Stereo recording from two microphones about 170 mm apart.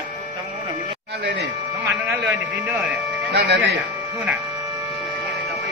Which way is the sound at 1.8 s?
15° right (ahead or behind).